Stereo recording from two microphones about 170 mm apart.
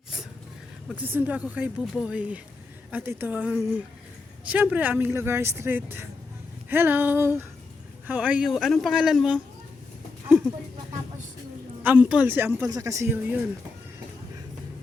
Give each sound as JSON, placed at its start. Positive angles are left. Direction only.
{"t": 0.9, "sound": "speech", "side_deg": -10}
{"t": 11.8, "sound": "speech", "side_deg": -10}